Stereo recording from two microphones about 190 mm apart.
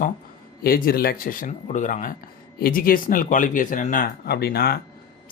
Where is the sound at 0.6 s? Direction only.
50° left (ahead or behind).